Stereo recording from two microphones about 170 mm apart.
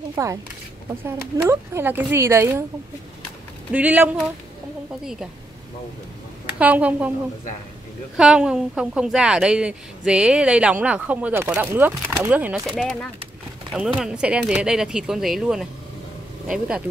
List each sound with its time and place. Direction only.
0.1 s a woman's voice: 20° right (ahead or behind)
3.7 s a woman's voice: 10° right (ahead or behind)
6.6 s a woman's voice: 10° right (ahead or behind)
8.2 s a woman's voice: 5° right (ahead or behind)
12.6 s speech: 5° left (ahead or behind)